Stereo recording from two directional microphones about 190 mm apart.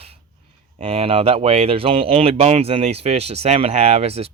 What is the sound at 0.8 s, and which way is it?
Speech, 30° right (ahead or behind).